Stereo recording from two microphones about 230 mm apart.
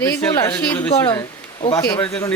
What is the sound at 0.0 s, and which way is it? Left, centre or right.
A man's voice, centre.